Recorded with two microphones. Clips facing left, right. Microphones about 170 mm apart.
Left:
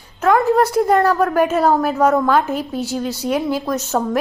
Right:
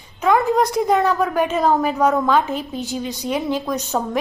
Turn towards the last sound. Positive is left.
turn(degrees=5)  # may be behind; listen again after turning